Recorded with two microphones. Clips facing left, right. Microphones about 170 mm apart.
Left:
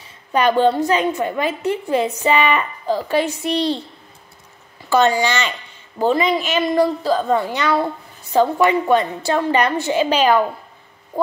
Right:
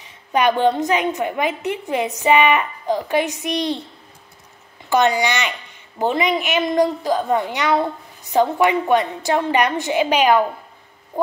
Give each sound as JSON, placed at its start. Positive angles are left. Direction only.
{"t": 0.0, "sound": "a woman's voice", "side_deg": -15}
{"t": 4.8, "sound": "a woman's voice", "side_deg": -15}